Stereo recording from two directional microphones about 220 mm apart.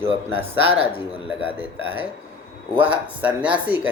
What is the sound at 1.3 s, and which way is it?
Speech, 25° left (ahead or behind).